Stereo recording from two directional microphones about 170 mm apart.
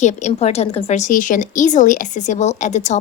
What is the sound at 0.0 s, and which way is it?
Speech, 45° left (ahead or behind).